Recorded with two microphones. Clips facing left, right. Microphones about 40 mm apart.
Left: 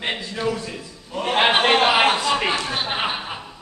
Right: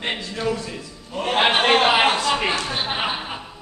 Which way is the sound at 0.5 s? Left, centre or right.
Centre.